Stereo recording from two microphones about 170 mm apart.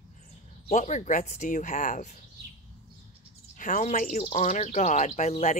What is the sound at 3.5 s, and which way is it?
Speech, 50° left (ahead or behind).